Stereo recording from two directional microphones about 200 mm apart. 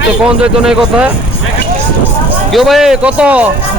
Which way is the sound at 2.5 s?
Centre (ahead or behind).